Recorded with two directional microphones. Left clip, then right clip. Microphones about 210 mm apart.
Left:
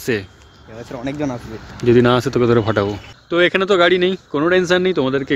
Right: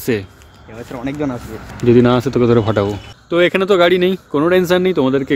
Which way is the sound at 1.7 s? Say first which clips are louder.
Right 1 dB; centre (ahead or behind).